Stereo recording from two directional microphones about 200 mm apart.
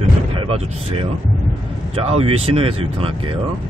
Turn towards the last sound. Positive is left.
turn(degrees=-25)  # may be behind; listen again after turning